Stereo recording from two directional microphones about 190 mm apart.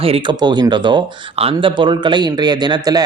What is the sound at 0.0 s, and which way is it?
Speech, 30° right (ahead or behind).